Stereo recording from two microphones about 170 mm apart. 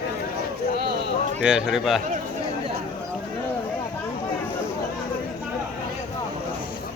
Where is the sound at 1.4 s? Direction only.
5° right (ahead or behind).